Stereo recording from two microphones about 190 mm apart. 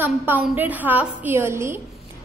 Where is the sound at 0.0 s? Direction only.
10° right (ahead or behind).